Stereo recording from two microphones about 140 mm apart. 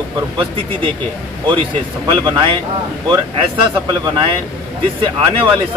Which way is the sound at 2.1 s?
35° right (ahead or behind).